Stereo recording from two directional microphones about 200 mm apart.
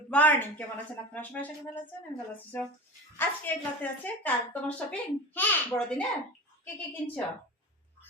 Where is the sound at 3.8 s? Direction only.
10° left (ahead or behind).